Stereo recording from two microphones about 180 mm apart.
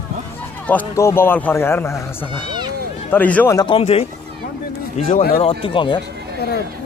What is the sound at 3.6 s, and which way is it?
Speech, 30° left (ahead or behind).